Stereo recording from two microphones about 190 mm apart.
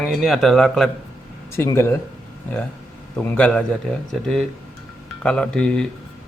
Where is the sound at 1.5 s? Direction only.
15° left (ahead or behind).